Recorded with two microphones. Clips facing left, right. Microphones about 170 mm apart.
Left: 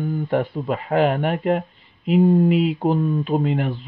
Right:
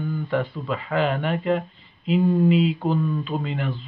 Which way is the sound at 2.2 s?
35° left (ahead or behind).